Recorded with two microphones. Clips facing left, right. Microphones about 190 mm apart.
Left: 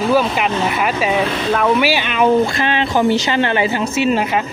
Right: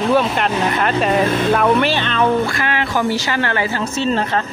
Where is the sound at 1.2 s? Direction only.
50° right (ahead or behind).